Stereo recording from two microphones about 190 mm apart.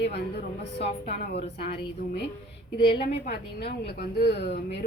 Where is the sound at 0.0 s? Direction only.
60° left (ahead or behind).